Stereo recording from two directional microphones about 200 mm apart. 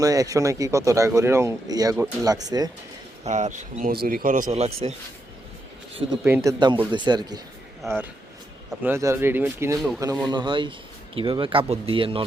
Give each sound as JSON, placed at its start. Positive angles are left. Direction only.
{"t": 0.0, "sound": "speech", "side_deg": -15}
{"t": 3.2, "sound": "speech", "side_deg": -35}
{"t": 6.2, "sound": "speech", "side_deg": -15}
{"t": 9.7, "sound": "speech", "side_deg": 0}
{"t": 10.2, "sound": "speech", "side_deg": -25}